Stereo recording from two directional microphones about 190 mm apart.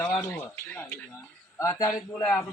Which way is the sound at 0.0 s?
10° left (ahead or behind).